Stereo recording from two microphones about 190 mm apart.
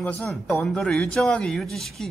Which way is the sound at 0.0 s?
Centre (ahead or behind).